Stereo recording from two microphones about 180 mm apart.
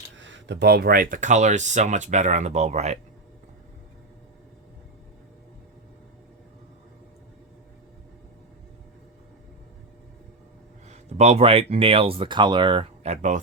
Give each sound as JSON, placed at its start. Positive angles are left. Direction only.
{"t": 0.2, "sound": "speech", "side_deg": -90}
{"t": 10.8, "sound": "speech", "side_deg": -35}